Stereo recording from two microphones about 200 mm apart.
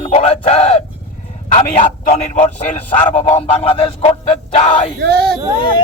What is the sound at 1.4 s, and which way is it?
Speech, 35° left (ahead or behind).